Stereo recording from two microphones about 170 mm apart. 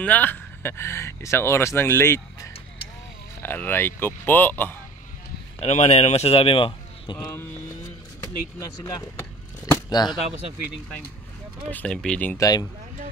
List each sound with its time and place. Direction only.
0.0 s speech: 10° left (ahead or behind)
5.6 s speech: 40° left (ahead or behind)
8.5 s speech: 20° left (ahead or behind)
11.7 s speech: 5° left (ahead or behind)
12.4 s speech: 20° left (ahead or behind)